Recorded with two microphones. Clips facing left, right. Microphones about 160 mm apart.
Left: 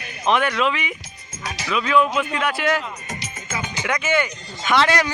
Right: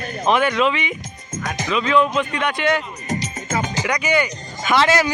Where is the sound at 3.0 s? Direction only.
40° right (ahead or behind).